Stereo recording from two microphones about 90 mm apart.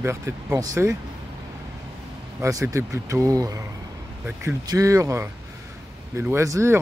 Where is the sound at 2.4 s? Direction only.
35° right (ahead or behind).